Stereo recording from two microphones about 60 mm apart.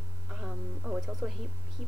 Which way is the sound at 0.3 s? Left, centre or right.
Centre.